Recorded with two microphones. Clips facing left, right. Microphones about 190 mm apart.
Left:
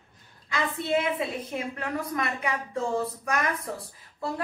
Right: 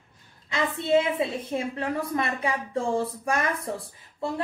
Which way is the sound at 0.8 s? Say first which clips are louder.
Right 5 dB; 25° right (ahead or behind).